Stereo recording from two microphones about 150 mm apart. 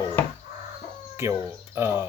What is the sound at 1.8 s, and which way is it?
Speech, 20° right (ahead or behind).